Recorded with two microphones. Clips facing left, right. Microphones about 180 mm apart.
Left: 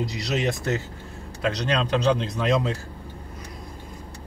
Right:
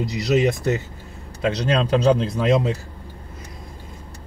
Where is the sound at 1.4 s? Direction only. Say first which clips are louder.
Right 4 dB; 30° right (ahead or behind).